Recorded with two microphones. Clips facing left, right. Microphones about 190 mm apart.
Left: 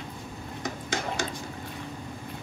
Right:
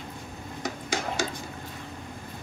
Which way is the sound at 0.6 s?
10° right (ahead or behind).